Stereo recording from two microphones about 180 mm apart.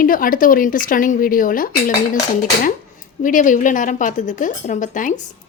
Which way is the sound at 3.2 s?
45° left (ahead or behind).